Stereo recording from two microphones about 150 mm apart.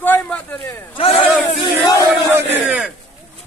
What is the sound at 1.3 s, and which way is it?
Battle cry, centre (ahead or behind).